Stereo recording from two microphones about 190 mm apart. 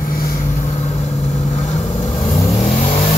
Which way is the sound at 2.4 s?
35° left (ahead or behind).